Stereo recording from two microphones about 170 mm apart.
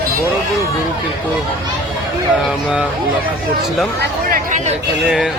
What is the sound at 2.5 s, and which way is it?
Speech, 5° right (ahead or behind).